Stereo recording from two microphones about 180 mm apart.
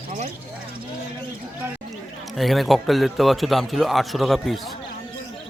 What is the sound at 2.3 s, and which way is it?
Speech, centre (ahead or behind).